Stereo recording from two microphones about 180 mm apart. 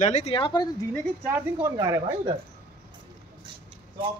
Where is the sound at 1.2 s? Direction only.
10° right (ahead or behind).